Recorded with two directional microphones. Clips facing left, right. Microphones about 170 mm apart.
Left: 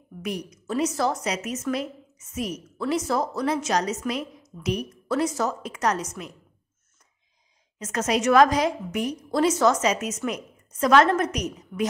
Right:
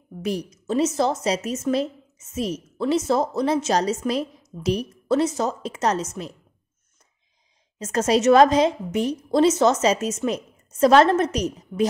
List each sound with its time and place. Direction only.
0.2 s a woman's voice: 30° right (ahead or behind)
7.8 s a woman's voice: 30° right (ahead or behind)